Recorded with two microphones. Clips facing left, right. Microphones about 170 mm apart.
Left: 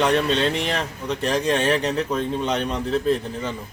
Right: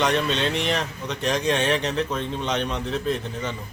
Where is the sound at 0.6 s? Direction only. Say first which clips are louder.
Even; 35° left (ahead or behind).